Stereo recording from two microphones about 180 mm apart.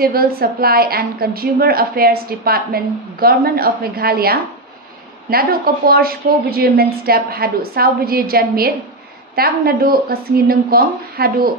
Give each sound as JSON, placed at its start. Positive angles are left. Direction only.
{"t": 0.0, "sound": "a woman's voice", "side_deg": -55}